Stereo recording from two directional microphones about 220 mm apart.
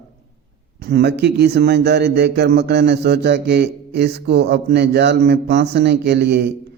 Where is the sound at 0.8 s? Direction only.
50° right (ahead or behind).